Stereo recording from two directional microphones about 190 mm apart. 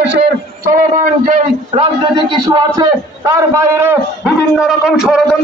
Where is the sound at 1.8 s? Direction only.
25° right (ahead or behind).